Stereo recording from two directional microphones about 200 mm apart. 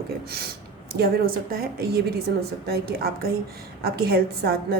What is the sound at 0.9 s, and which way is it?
A woman's voice, 50° right (ahead or behind).